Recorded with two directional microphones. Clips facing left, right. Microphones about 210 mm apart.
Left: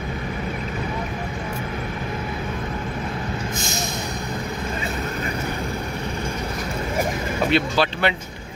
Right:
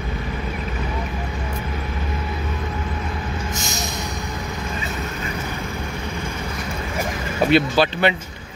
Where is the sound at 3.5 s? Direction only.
55° left (ahead or behind).